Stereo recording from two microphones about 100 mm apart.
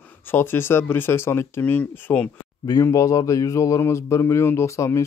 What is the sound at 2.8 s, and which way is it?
Speech, 35° left (ahead or behind).